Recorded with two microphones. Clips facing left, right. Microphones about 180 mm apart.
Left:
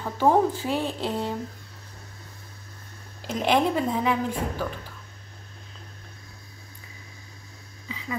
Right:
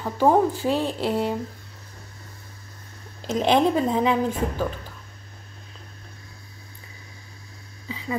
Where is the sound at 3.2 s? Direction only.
20° right (ahead or behind).